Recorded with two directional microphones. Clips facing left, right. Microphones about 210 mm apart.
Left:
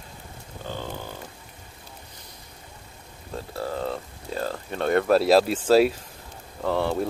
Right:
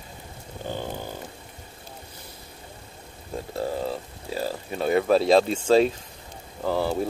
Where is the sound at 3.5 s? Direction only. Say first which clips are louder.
Right 2 dB; 15° right (ahead or behind).